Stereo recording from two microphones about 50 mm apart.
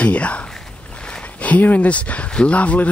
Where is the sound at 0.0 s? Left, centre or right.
Left.